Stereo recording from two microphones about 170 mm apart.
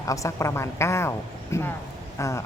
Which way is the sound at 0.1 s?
20° left (ahead or behind).